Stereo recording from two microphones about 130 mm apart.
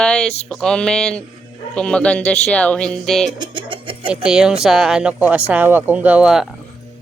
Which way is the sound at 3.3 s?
35° right (ahead or behind).